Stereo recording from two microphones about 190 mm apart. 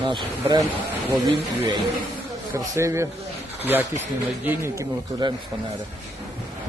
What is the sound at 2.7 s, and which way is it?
Speech, 15° right (ahead or behind).